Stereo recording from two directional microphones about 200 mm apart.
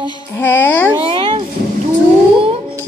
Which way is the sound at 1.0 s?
25° right (ahead or behind).